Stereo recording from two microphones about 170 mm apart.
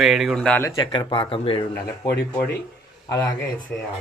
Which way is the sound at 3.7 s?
10° left (ahead or behind).